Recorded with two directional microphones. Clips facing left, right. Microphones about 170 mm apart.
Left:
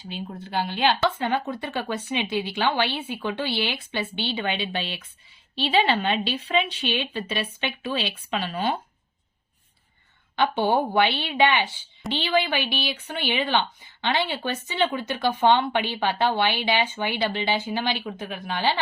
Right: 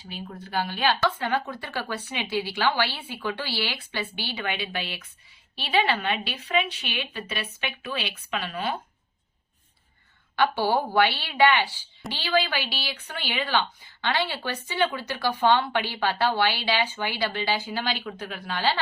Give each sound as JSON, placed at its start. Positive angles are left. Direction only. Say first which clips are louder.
{"t": 0.1, "sound": "a woman's voice", "louder": "left 2 dB", "side_deg": 25}
{"t": 10.3, "sound": "a woman's voice", "louder": "left 1 dB", "side_deg": 20}